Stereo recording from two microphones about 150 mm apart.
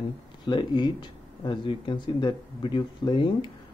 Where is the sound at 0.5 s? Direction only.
30° left (ahead or behind).